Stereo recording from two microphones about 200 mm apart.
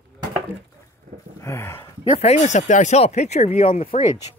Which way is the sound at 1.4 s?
15° left (ahead or behind).